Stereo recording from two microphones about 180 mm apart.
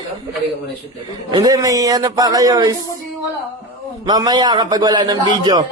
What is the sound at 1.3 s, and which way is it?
A man's voice, 20° right (ahead or behind).